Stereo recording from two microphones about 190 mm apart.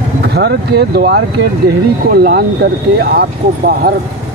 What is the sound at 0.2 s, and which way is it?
Speech, 60° right (ahead or behind).